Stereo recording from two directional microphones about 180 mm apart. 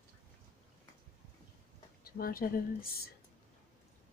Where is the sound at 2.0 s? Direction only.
55° left (ahead or behind).